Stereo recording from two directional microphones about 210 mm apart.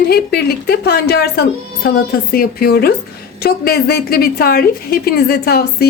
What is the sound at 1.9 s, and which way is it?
A woman's voice, 45° left (ahead or behind).